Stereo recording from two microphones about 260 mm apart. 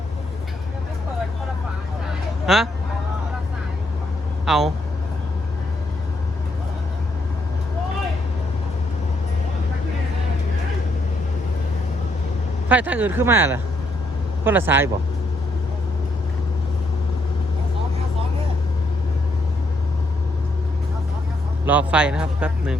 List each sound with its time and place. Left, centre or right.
2.5 s speech: centre
4.4 s speech: centre
12.6 s speech: centre
21.7 s speech: centre